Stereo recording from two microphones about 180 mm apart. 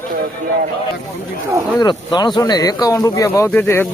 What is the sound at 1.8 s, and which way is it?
Speech, 25° left (ahead or behind).